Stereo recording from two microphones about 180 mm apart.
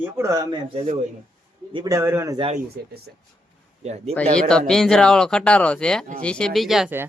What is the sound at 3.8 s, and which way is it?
Speech, 35° right (ahead or behind).